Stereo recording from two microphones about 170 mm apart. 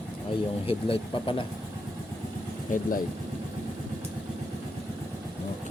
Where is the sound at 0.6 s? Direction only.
35° left (ahead or behind).